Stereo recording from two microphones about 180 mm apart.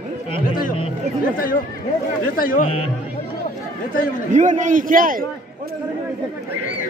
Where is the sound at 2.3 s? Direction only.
50° left (ahead or behind).